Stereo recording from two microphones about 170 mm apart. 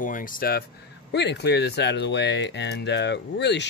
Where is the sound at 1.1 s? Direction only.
85° left.